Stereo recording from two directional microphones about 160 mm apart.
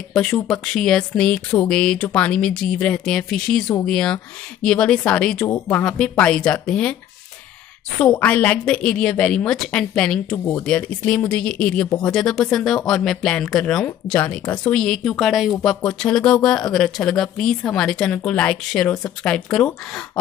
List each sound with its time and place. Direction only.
0.1 s a woman's voice: 5° left (ahead or behind)
8.0 s a woman's voice: 5° left (ahead or behind)
10.3 s a woman's voice: 15° left (ahead or behind)